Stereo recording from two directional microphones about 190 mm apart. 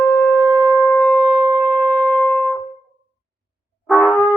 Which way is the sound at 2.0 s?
5° left (ahead or behind).